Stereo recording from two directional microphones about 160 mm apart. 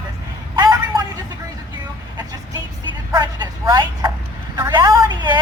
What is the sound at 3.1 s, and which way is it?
Vehicle, 25° right (ahead or behind).